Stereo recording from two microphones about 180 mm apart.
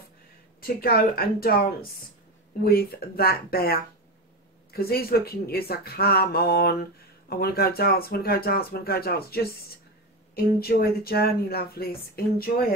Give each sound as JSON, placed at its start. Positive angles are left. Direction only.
{"t": 0.6, "sound": "speech", "side_deg": 55}
{"t": 4.7, "sound": "speech", "side_deg": 55}